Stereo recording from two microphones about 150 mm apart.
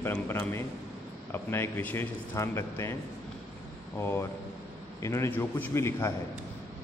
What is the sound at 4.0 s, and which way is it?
Speech, 15° left (ahead or behind).